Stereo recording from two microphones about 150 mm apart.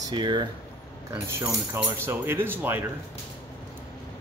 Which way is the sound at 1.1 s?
15° right (ahead or behind).